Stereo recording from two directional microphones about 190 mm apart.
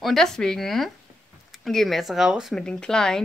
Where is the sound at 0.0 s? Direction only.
Centre (ahead or behind).